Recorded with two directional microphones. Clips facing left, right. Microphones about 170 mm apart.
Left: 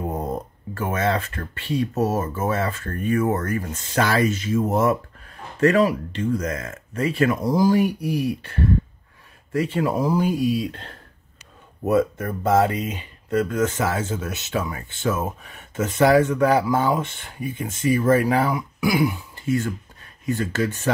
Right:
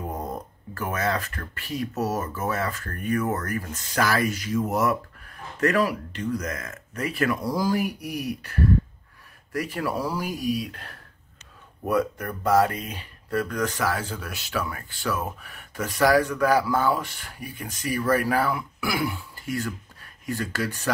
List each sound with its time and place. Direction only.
0.0 s speech: 25° left (ahead or behind)